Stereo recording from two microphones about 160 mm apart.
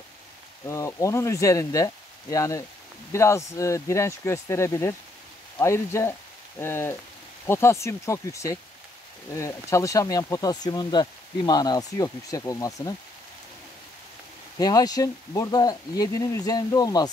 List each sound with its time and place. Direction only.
0.7 s speech: 20° left (ahead or behind)
14.6 s speech: 25° left (ahead or behind)